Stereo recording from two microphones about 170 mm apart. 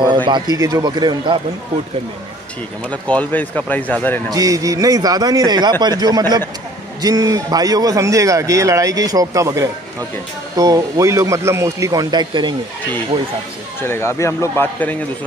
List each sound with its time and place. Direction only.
0.0 s a man's voice: 25° right (ahead or behind)
2.9 s speech: 10° left (ahead or behind)
4.3 s a man's voice: 20° right (ahead or behind)
13.8 s speech: 15° left (ahead or behind)